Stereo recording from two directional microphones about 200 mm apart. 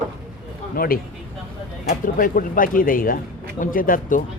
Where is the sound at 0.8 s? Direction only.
45° left (ahead or behind).